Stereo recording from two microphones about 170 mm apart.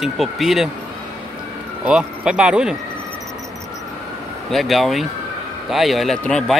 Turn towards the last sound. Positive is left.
turn(degrees=5)  # may be behind; listen again after turning